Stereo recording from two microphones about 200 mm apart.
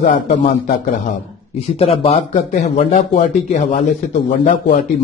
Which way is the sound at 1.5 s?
30° left (ahead or behind).